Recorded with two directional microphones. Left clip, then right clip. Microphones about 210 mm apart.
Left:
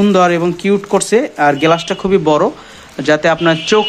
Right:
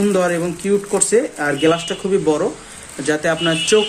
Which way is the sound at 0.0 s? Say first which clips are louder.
Left 6 dB; 40° left (ahead or behind).